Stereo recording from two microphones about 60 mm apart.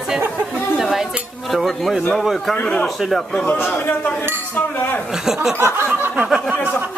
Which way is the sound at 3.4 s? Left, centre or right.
Left.